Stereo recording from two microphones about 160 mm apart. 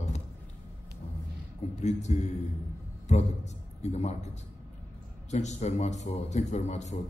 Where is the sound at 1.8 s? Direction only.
45° left (ahead or behind).